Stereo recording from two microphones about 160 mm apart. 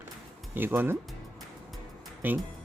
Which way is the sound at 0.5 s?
15° right (ahead or behind).